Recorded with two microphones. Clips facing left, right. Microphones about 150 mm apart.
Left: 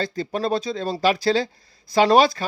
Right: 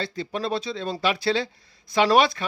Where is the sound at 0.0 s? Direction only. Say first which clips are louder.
Left 4 dB; 45° left (ahead or behind).